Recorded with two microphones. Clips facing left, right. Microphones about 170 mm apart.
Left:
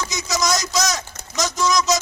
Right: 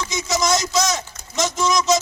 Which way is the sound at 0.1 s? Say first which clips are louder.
Right 4 dB; 25° right (ahead or behind).